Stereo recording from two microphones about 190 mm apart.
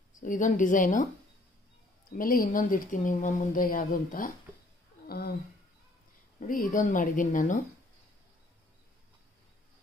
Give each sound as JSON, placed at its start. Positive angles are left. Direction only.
{"t": 0.2, "sound": "speech", "side_deg": 45}
{"t": 2.1, "sound": "speech", "side_deg": 45}
{"t": 5.0, "sound": "a sound", "side_deg": 55}
{"t": 6.4, "sound": "speech", "side_deg": 45}